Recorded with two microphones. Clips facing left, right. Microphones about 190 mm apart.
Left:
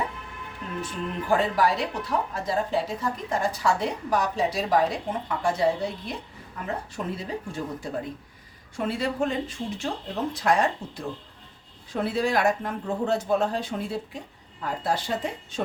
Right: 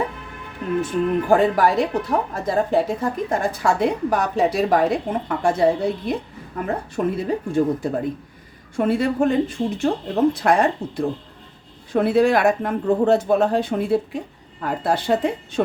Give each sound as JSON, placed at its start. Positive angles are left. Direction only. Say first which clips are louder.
{"t": 0.8, "sound": "speech", "louder": "right 11 dB", "side_deg": -50}